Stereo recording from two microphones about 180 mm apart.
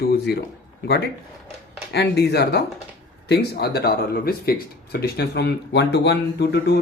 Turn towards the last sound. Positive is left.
turn(degrees=65)  # may be behind; listen again after turning